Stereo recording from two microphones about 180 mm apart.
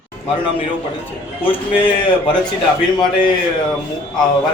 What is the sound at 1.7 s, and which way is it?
Speech, 30° left (ahead or behind).